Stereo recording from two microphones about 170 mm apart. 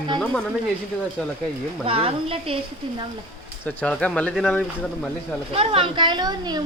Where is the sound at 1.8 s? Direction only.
35° right (ahead or behind).